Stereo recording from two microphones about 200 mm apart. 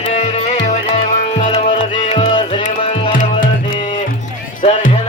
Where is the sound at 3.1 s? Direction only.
45° left (ahead or behind).